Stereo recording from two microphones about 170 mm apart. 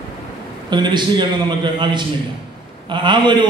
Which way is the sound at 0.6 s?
25° right (ahead or behind).